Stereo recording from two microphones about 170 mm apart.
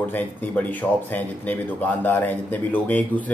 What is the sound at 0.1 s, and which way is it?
Speech, 10° left (ahead or behind).